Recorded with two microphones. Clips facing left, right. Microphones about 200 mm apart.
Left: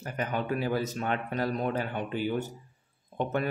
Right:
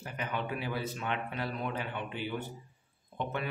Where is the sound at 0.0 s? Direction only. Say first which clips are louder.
Left 5 dB; 45° left (ahead or behind).